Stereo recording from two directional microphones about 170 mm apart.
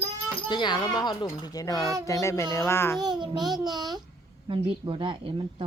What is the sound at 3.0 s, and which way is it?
Speech, 25° right (ahead or behind).